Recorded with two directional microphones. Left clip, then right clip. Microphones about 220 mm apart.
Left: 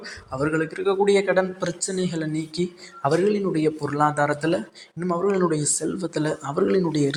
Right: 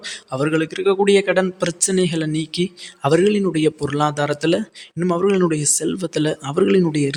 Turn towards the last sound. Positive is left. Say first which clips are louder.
# right 4 dB
turn(degrees=-30)  # may be behind; listen again after turning